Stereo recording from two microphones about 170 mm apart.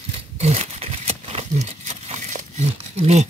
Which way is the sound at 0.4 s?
40° right (ahead or behind).